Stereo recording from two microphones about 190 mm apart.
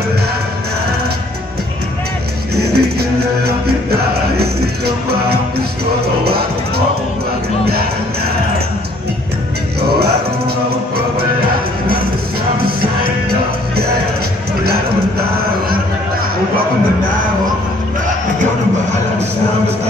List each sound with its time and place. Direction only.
2.5 s music: 55° right (ahead or behind)